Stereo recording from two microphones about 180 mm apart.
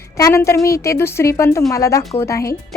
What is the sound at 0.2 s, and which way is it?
Speech, 15° left (ahead or behind).